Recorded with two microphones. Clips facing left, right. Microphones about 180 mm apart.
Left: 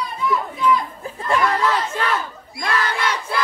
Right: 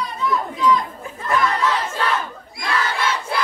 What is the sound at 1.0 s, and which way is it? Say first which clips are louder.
Crowd: left 2 dB; 35° left (ahead or behind).